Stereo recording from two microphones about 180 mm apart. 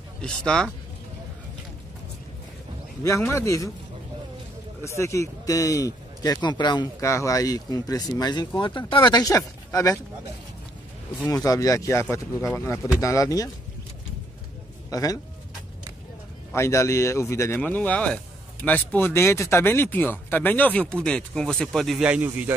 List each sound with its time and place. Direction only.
0.2 s speech: 5° left (ahead or behind)
3.0 s a man's voice: 15° left (ahead or behind)
4.8 s a man's voice: 15° left (ahead or behind)
11.1 s a man's voice: 20° left (ahead or behind)
14.9 s speech: 20° left (ahead or behind)
16.5 s a man's voice: 15° left (ahead or behind); by 22.5 s 10° right (ahead or behind)